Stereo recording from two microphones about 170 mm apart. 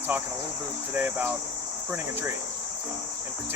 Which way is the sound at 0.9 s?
10° right (ahead or behind).